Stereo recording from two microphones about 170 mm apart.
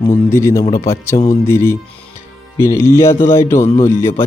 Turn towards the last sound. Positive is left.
turn(degrees=15)  # may be behind; listen again after turning